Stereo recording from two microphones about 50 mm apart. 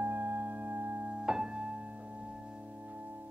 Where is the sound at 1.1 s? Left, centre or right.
Centre.